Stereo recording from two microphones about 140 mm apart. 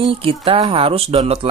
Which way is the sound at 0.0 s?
40° right (ahead or behind).